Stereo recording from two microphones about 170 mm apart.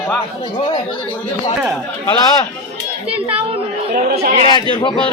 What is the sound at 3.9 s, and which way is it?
Speech, 65° right (ahead or behind).